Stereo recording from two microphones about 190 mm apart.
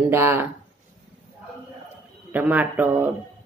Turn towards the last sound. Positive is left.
turn(degrees=-10)  # may be behind; listen again after turning